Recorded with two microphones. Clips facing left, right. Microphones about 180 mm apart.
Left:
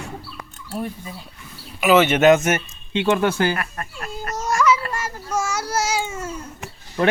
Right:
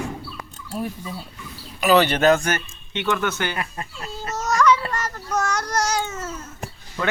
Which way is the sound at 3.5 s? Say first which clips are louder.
Left 1 dB; 20° right (ahead or behind).